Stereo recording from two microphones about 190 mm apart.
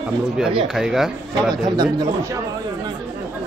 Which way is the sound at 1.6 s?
20° right (ahead or behind).